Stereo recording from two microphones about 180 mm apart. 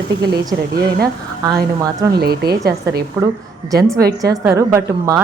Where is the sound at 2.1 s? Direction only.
60° right (ahead or behind).